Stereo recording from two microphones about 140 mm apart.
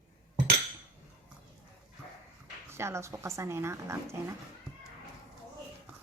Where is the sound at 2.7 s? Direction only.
20° right (ahead or behind).